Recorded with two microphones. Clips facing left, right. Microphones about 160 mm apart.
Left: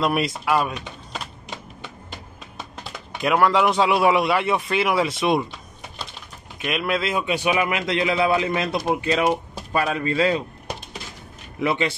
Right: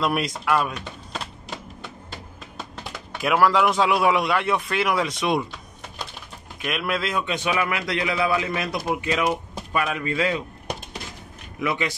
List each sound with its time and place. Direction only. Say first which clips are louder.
0.0 s speech: left 2 dB; centre (ahead or behind)
3.2 s speech: left 1 dB; centre (ahead or behind)
6.6 s a man's voice: left 2 dB; centre (ahead or behind); by 10.4 s 30° left (ahead or behind)
11.6 s a man's voice: left 3 dB; 30° left (ahead or behind)